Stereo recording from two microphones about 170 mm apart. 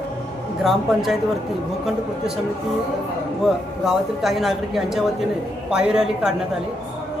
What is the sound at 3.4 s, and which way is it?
Speech, centre (ahead or behind).